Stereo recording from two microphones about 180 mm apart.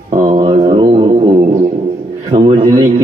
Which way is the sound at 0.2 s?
30° right (ahead or behind).